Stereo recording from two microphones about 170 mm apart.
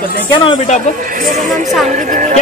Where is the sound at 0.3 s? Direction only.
30° left (ahead or behind).